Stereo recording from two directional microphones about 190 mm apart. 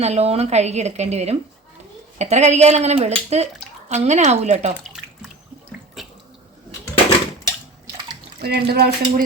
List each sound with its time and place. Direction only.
0.0 s speech: 35° right (ahead or behind)
6.0 s water: centre (ahead or behind)
8.4 s speech: 55° right (ahead or behind)